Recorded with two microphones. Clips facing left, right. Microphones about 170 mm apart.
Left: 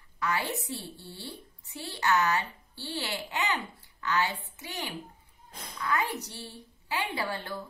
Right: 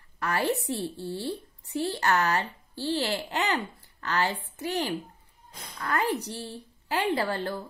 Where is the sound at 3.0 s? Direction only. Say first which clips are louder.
Right 5 dB; 40° right (ahead or behind).